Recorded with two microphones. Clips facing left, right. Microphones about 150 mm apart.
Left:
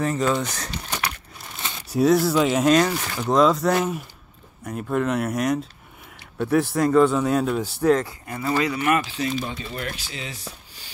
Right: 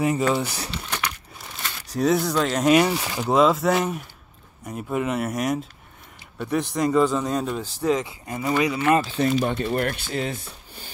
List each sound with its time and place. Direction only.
0.0 s speech: 10° right (ahead or behind)
1.9 s speech: 5° left (ahead or behind)
2.7 s speech: 10° right (ahead or behind)
3.3 s speech: centre (ahead or behind)
8.3 s speech: 20° right (ahead or behind)
9.1 s speech: 55° right (ahead or behind)